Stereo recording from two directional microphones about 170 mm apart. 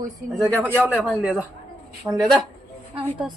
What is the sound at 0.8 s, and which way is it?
Speech, 10° right (ahead or behind).